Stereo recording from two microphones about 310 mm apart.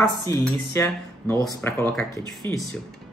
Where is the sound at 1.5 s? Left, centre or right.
Centre.